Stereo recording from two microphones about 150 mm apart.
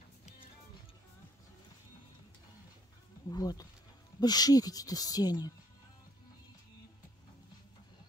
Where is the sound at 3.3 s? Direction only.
25° left (ahead or behind).